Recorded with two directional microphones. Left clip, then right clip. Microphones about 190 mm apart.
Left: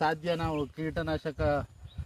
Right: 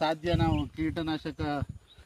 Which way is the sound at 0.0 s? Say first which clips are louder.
Right 1 dB; 45° left (ahead or behind).